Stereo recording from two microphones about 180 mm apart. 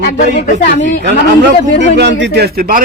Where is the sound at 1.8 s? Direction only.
75° right (ahead or behind); by 2.8 s 55° right (ahead or behind).